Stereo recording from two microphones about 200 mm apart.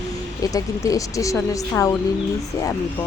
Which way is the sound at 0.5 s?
15° left (ahead or behind).